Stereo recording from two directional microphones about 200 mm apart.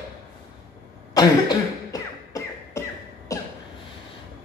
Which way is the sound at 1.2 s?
20° left (ahead or behind).